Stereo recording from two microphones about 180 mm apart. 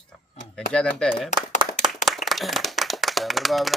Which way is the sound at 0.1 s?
5° left (ahead or behind).